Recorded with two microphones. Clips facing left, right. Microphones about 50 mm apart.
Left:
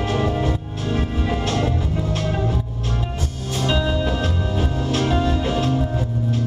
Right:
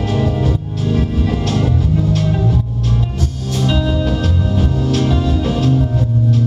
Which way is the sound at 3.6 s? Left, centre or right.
Centre.